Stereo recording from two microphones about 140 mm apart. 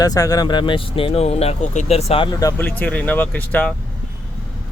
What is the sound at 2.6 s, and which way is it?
Speech, 10° left (ahead or behind).